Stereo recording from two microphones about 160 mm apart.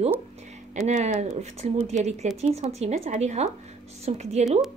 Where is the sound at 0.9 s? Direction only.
45° right (ahead or behind).